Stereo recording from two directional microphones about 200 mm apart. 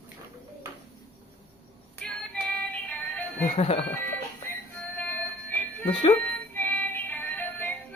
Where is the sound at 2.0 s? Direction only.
5° left (ahead or behind).